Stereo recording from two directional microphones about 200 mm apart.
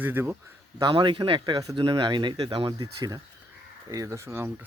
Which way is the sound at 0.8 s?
25° right (ahead or behind).